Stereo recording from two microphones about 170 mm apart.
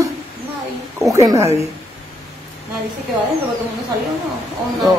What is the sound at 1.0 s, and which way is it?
Speech, 20° right (ahead or behind).